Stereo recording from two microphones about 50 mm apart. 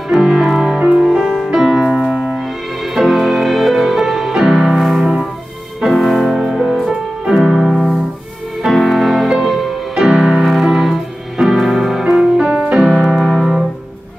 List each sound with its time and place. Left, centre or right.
0.1 s music: centre
2.2 s music: centre
9.9 s music: centre
10.4 s music: centre
12.4 s music: right
12.7 s piano: centre